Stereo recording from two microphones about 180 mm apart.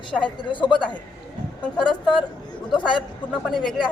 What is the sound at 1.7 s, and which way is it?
Speech, centre (ahead or behind).